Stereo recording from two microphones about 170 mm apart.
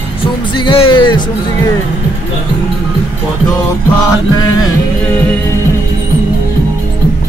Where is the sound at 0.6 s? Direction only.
30° left (ahead or behind).